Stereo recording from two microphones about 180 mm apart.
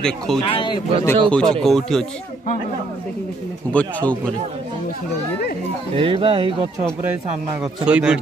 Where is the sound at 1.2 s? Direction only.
5° left (ahead or behind).